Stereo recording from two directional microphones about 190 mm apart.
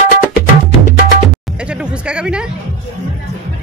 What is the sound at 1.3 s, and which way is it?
Music, 5° right (ahead or behind).